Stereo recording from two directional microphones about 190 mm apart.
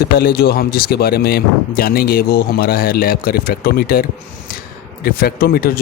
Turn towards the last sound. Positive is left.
turn(degrees=55)  # may be behind; listen again after turning